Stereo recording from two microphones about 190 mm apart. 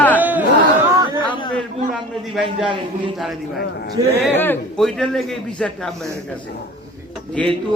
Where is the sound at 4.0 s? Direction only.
20° right (ahead or behind).